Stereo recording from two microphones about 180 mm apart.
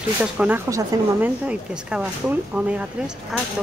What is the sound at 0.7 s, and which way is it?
Speech, 20° right (ahead or behind).